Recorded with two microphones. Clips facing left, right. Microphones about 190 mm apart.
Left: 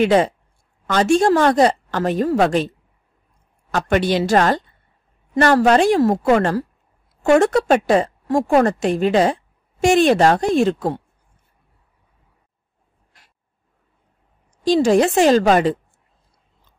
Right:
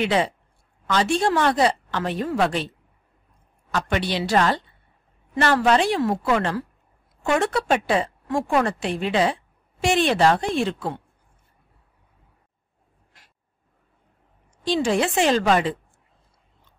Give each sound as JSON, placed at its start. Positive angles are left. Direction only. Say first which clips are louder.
{"t": 0.0, "sound": "a woman's voice", "louder": "left 7 dB", "side_deg": 45}
{"t": 3.7, "sound": "a woman's voice", "louder": "left 7 dB", "side_deg": 45}
{"t": 14.6, "sound": "a woman's voice", "louder": "left 7 dB", "side_deg": 40}